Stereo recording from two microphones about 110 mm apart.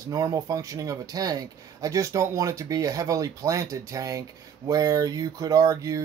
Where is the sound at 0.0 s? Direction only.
30° right (ahead or behind).